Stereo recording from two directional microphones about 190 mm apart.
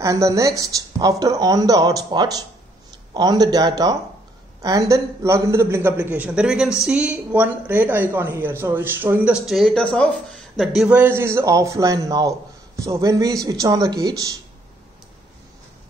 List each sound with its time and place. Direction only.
0.0 s a man's voice: 15° right (ahead or behind)